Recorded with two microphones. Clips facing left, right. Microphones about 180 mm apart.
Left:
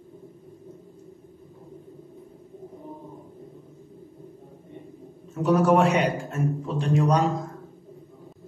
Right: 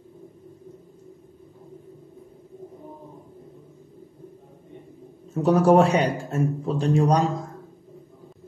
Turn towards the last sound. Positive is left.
turn(degrees=-35)  # may be behind; listen again after turning